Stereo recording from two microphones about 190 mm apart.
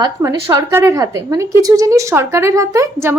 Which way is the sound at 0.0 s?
20° right (ahead or behind).